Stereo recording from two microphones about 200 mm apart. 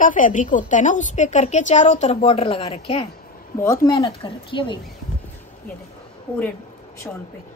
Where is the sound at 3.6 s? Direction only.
15° left (ahead or behind).